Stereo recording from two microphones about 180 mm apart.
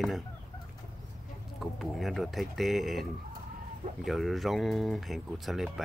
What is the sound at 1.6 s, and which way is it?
Speech, centre (ahead or behind).